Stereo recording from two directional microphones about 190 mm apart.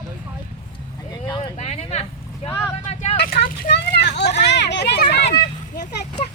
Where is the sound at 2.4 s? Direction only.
35° left (ahead or behind).